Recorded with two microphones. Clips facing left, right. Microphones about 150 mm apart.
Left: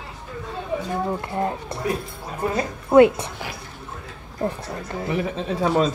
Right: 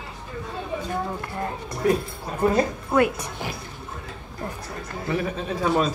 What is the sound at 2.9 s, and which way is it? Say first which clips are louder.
Speech: left 8 dB; 25° left (ahead or behind).